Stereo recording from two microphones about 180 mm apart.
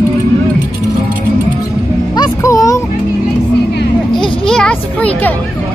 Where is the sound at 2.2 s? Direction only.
20° left (ahead or behind).